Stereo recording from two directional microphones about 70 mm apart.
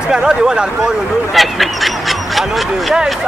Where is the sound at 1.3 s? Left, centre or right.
Centre.